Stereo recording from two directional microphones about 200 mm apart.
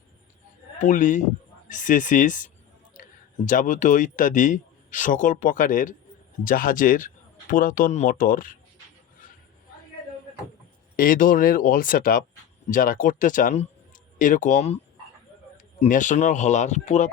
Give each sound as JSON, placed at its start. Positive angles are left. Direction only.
{"t": 0.8, "sound": "speech", "side_deg": 40}
{"t": 10.9, "sound": "speech", "side_deg": 45}
{"t": 15.8, "sound": "speech", "side_deg": 40}